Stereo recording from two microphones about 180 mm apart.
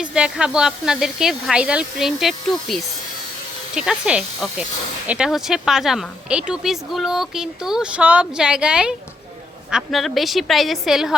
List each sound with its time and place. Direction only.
0.0 s speech: 5° right (ahead or behind)